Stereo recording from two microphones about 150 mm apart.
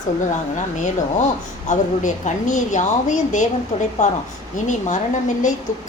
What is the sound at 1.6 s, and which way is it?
A woman's voice, 50° left (ahead or behind).